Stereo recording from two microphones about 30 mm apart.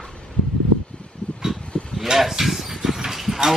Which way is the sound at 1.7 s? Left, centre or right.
Centre.